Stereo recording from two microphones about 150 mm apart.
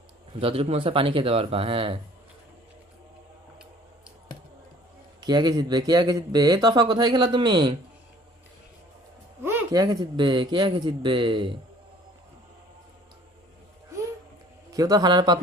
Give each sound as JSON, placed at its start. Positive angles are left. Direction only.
{"t": 0.3, "sound": "speech", "side_deg": -40}
{"t": 5.2, "sound": "speech", "side_deg": -30}
{"t": 9.4, "sound": "a sound", "side_deg": -15}
{"t": 9.7, "sound": "speech", "side_deg": -25}
{"t": 14.7, "sound": "speech", "side_deg": -25}